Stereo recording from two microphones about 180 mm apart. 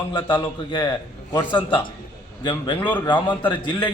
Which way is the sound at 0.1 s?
25° left (ahead or behind).